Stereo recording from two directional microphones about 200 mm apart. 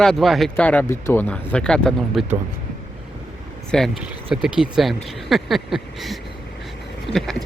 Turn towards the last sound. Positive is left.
turn(degrees=0)  # may be behind; listen again after turning